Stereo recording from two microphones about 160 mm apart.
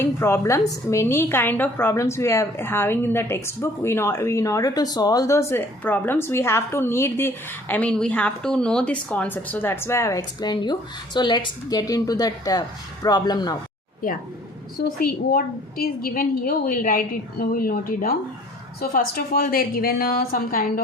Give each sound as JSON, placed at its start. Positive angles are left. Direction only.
{"t": 0.0, "sound": "a woman's voice", "side_deg": 15}
{"t": 14.0, "sound": "a woman's voice", "side_deg": 60}